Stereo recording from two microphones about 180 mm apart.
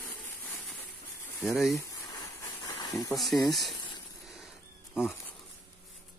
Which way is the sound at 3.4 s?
Centre (ahead or behind).